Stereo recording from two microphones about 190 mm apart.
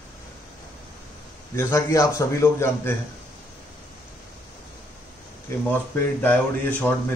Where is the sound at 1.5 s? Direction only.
15° left (ahead or behind).